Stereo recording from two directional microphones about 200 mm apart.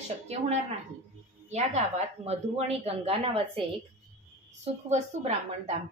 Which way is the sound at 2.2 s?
30° right (ahead or behind).